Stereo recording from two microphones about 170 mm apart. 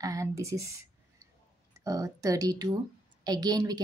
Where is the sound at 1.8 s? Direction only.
20° right (ahead or behind).